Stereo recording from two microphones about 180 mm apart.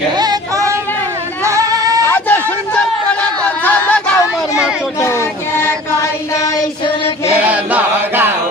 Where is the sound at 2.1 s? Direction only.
10° left (ahead or behind).